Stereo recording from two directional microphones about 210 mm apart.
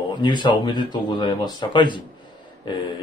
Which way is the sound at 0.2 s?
20° left (ahead or behind).